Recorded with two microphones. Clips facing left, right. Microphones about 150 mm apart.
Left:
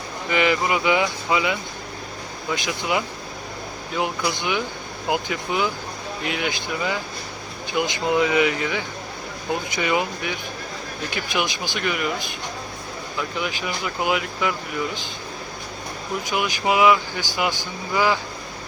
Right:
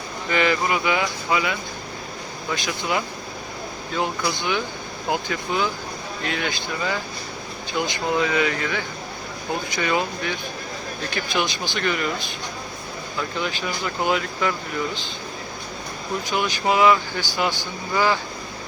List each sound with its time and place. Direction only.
0.3 s speech: 15° left (ahead or behind)
2.6 s speech: 15° left (ahead or behind)
13.4 s speech: 15° left (ahead or behind)
16.3 s speech: 10° left (ahead or behind)